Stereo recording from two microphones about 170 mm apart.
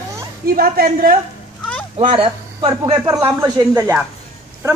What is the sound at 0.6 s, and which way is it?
Speech, 60° right (ahead or behind).